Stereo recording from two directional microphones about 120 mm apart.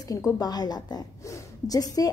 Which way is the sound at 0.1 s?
30° left (ahead or behind).